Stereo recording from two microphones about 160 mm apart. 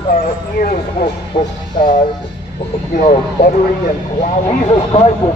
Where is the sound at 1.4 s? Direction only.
50° left (ahead or behind).